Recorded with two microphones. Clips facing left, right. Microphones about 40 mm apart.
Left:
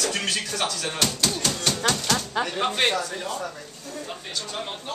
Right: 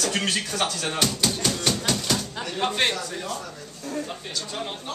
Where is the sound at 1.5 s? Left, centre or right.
Centre.